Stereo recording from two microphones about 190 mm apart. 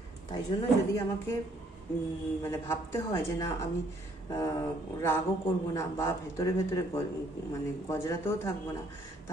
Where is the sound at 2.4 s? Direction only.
15° left (ahead or behind).